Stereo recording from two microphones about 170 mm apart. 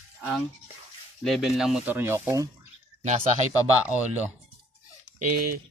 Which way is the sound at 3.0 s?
45° right (ahead or behind).